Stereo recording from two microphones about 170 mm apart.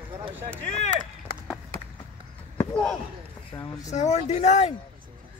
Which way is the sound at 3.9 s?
45° left (ahead or behind).